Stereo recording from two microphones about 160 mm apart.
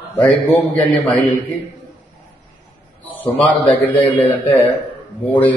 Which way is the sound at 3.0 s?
10° left (ahead or behind).